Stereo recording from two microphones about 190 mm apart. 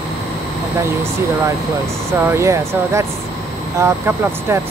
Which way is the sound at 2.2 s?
15° right (ahead or behind).